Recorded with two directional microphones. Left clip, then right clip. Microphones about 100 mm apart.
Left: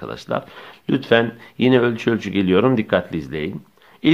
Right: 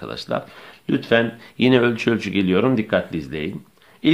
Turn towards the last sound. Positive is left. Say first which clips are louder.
# left 1 dB
turn(degrees=40)  # may be behind; listen again after turning